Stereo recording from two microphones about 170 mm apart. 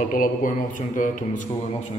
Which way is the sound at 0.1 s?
50° left (ahead or behind).